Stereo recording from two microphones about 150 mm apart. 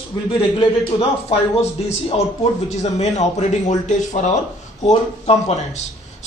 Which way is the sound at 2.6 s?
45° left (ahead or behind).